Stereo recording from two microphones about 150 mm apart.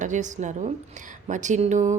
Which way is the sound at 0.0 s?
55° right (ahead or behind).